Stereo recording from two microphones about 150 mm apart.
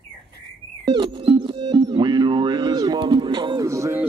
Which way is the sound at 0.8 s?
30° right (ahead or behind).